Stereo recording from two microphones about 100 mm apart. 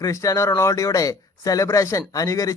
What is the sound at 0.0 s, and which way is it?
Speech, 35° left (ahead or behind).